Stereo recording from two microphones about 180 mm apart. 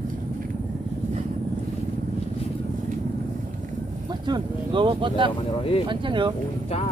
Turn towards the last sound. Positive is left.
turn(degrees=-25)  # may be behind; listen again after turning